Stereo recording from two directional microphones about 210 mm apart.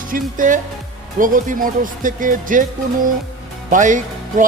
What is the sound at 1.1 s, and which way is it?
Speech, 40° right (ahead or behind).